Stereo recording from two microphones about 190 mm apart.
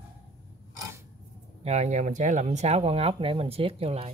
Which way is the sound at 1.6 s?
35° right (ahead or behind).